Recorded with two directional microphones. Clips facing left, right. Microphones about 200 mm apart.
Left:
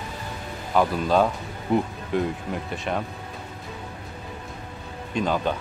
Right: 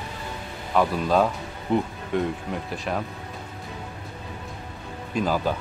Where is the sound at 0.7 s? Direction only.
Centre (ahead or behind).